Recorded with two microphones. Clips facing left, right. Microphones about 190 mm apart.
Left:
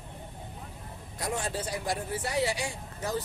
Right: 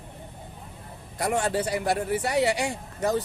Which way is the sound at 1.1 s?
65° right (ahead or behind).